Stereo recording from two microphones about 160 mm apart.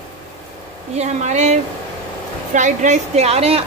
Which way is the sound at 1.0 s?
45° right (ahead or behind).